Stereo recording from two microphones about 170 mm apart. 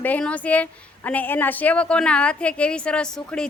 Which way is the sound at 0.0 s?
10° left (ahead or behind).